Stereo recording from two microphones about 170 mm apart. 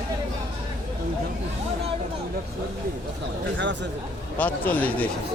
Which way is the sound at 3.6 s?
90° right.